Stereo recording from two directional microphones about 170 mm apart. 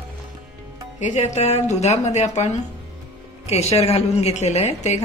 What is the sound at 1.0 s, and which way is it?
A woman's voice, 40° left (ahead or behind).